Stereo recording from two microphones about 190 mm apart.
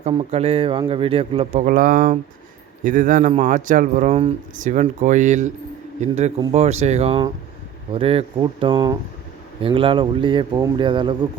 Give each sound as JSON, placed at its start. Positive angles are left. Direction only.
{"t": 0.1, "sound": "speech", "side_deg": -30}
{"t": 1.6, "sound": "speech", "side_deg": -45}